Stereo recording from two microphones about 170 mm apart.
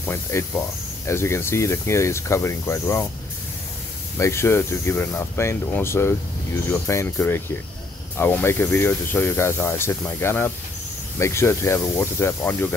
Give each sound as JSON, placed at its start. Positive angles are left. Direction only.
{"t": 0.0, "sound": "speech", "side_deg": 15}
{"t": 4.2, "sound": "speech", "side_deg": 15}